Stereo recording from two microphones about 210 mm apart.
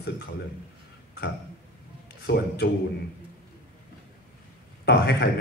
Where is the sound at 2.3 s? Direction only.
50° left (ahead or behind).